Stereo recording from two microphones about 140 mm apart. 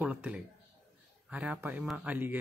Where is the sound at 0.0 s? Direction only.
10° right (ahead or behind).